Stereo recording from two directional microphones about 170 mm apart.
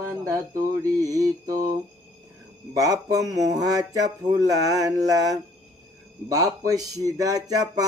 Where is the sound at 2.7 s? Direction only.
20° right (ahead or behind).